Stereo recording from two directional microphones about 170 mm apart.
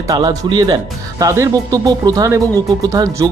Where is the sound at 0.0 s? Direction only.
20° right (ahead or behind).